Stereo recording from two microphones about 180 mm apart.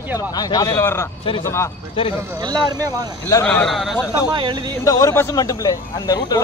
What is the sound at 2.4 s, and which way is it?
Speech, 25° right (ahead or behind).